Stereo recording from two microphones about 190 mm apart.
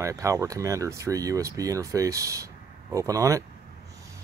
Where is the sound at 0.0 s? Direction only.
15° right (ahead or behind).